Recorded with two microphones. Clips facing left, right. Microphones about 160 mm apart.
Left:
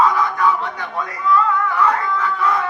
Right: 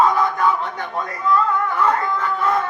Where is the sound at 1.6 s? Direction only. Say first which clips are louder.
Left 1 dB; 45° right (ahead or behind).